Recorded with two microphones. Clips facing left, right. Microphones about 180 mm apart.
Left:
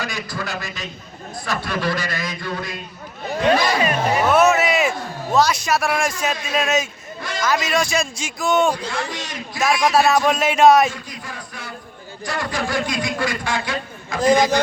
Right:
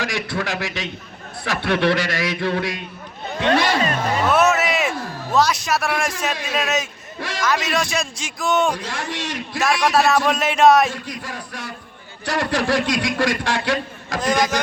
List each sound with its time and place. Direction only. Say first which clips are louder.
0.0 s a man's voice: right 3 dB; 90° right
1.5 s a man's voice: right 5 dB; 70° right (ahead or behind)
3.5 s speech: right 1 dB; 15° left (ahead or behind)
4.3 s a man's voice: left 2 dB; centre (ahead or behind)
9.1 s a man's voice: right 3 dB; 70° right (ahead or behind)
9.6 s a man's voice: left 1 dB; centre (ahead or behind)
12.2 s a man's voice: right 4 dB; 75° right (ahead or behind)